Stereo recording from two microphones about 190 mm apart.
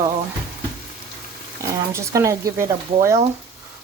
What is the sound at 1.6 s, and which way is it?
Speech, 15° right (ahead or behind).